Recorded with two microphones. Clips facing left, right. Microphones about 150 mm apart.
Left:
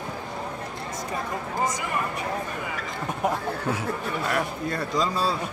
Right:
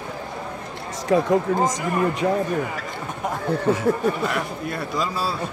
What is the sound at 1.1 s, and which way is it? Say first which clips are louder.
Speech: right 14 dB; 90° right.